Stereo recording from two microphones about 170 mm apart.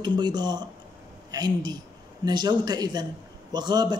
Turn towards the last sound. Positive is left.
turn(degrees=-25)  # may be behind; listen again after turning